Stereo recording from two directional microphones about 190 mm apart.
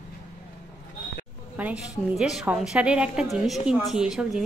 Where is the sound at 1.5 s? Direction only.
10° right (ahead or behind).